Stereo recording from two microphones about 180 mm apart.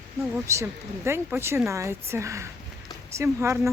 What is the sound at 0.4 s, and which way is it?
Speech, 15° right (ahead or behind).